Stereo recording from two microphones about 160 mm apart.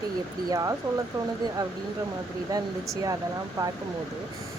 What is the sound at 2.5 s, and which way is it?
Speech, 25° right (ahead or behind).